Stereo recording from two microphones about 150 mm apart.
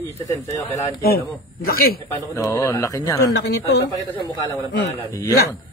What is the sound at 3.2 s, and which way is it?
Speech, 90° left.